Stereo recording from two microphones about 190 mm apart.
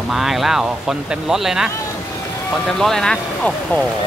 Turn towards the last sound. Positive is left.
turn(degrees=5)  # may be behind; listen again after turning